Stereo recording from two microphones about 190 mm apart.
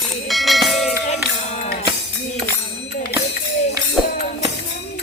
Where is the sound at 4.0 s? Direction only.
Centre (ahead or behind).